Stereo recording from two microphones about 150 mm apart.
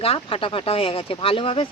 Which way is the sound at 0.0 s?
40° left (ahead or behind).